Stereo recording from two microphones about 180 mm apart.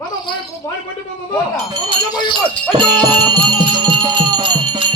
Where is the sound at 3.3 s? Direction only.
25° right (ahead or behind).